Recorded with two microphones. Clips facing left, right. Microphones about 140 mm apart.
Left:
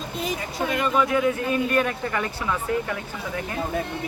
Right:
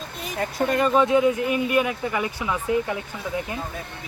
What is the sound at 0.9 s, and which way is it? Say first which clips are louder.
Speech: right 3 dB; 25° right (ahead or behind).